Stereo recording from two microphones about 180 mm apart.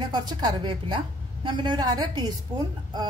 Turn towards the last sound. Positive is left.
turn(degrees=-20)  # may be behind; listen again after turning